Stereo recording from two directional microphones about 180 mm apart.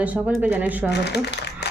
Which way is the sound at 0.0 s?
10° right (ahead or behind).